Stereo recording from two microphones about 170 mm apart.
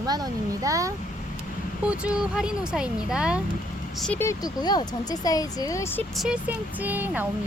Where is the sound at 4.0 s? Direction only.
10° left (ahead or behind).